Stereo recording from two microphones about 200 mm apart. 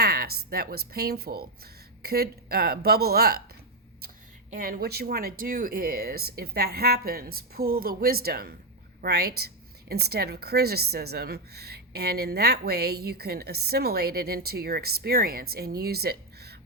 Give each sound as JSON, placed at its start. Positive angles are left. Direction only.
{"t": 0.0, "sound": "speech", "side_deg": -50}
{"t": 4.5, "sound": "a woman's voice", "side_deg": -45}